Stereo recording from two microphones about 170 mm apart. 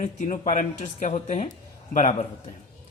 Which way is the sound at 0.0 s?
45° left (ahead or behind).